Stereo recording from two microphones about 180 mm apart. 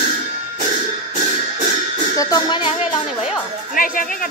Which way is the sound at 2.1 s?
20° left (ahead or behind).